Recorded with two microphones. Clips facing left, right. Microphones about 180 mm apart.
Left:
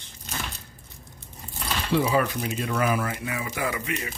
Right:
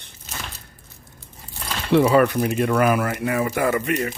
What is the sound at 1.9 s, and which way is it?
Speech, 65° right (ahead or behind).